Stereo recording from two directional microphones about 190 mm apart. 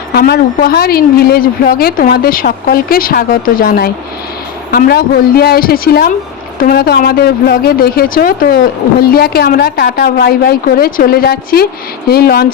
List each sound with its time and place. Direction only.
0.1 s a woman's voice: 55° left (ahead or behind)